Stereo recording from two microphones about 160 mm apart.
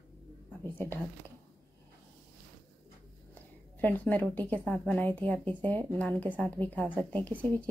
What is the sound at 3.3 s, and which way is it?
A woman's voice, 10° left (ahead or behind).